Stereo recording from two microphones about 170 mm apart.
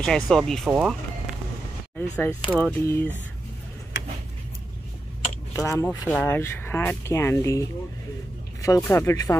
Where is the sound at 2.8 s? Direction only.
15° left (ahead or behind).